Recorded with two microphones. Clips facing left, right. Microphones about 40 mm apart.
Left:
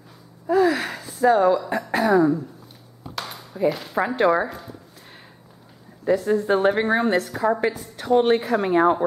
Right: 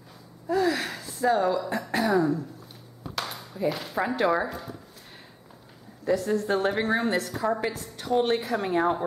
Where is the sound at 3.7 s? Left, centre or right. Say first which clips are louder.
Left 3 dB; centre.